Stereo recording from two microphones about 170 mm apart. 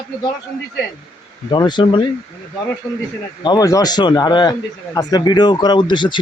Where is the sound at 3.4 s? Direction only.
25° left (ahead or behind).